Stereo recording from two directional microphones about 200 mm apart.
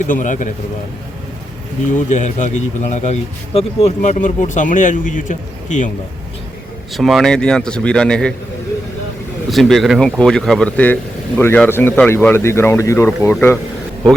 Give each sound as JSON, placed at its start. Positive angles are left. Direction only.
{"t": 0.0, "sound": "speech", "side_deg": 40}
{"t": 1.9, "sound": "speech", "side_deg": 40}
{"t": 6.9, "sound": "speech", "side_deg": 0}
{"t": 9.5, "sound": "speech", "side_deg": 0}